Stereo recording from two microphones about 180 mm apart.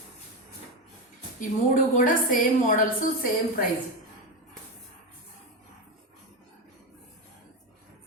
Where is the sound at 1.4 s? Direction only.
50° left (ahead or behind).